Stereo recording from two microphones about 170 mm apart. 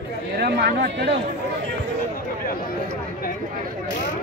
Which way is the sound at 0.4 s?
70° right (ahead or behind).